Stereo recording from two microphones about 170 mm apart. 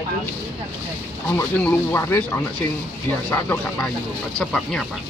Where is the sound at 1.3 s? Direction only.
10° left (ahead or behind).